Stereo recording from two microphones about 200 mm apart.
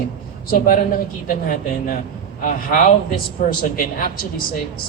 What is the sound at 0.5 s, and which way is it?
A man's voice, 45° left (ahead or behind).